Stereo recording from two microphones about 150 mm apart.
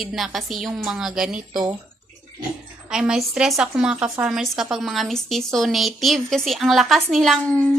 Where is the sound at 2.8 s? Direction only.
5° right (ahead or behind).